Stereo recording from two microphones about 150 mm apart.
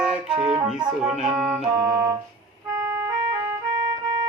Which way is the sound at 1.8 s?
20° right (ahead or behind).